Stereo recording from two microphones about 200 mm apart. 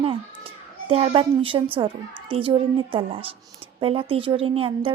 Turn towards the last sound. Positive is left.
turn(degrees=-25)  # may be behind; listen again after turning